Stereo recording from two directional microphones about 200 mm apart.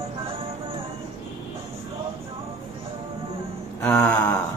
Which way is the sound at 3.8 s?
5° left (ahead or behind).